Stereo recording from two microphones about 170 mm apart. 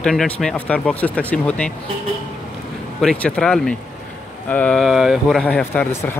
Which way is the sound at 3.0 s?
5° left (ahead or behind).